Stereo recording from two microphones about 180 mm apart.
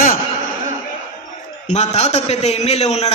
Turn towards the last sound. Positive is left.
turn(degrees=35)  # may be behind; listen again after turning